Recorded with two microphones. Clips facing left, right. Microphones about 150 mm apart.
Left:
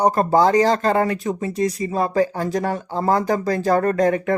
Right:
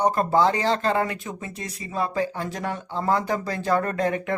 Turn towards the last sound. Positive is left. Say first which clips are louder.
# left 7 dB
turn(degrees=40)  # may be behind; listen again after turning